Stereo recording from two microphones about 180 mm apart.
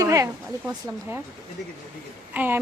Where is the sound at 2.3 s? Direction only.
10° right (ahead or behind).